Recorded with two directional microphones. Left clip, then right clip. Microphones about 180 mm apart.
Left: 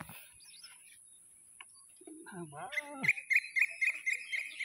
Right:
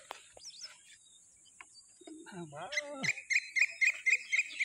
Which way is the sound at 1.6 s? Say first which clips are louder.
Right 1 dB; 5° right (ahead or behind).